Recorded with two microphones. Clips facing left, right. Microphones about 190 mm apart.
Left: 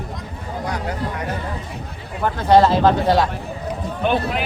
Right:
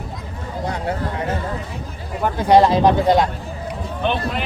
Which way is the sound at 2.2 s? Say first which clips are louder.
Even; 10° right (ahead or behind).